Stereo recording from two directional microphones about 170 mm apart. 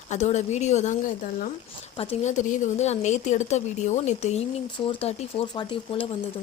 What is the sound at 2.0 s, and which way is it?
Speech, 40° left (ahead or behind).